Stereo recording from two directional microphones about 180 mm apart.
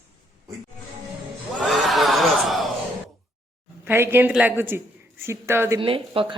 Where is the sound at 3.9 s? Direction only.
10° right (ahead or behind).